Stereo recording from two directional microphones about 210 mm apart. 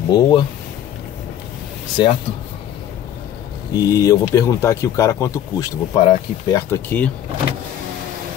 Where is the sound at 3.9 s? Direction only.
15° left (ahead or behind).